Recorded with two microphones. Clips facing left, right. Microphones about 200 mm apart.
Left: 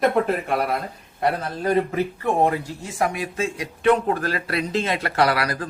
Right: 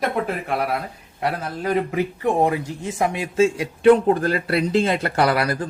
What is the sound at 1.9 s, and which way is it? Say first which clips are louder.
Speech: right 2 dB; 15° right (ahead or behind).